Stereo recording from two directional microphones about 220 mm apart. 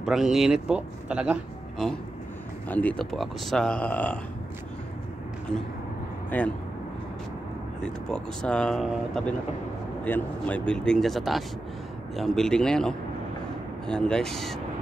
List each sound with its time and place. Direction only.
0.0 s speech: centre (ahead or behind)
7.8 s speech: 5° left (ahead or behind)